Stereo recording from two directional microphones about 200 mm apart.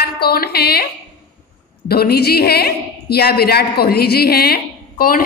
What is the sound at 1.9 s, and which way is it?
A woman's voice, 50° left (ahead or behind).